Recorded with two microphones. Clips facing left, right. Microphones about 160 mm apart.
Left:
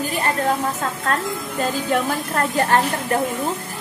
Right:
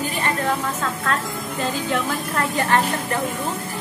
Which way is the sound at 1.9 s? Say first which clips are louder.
Left 2 dB; 45° left (ahead or behind).